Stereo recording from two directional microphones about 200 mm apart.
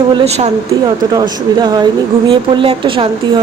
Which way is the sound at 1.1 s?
20° right (ahead or behind).